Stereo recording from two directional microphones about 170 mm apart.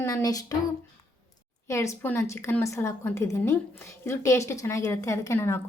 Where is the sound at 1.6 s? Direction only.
15° left (ahead or behind).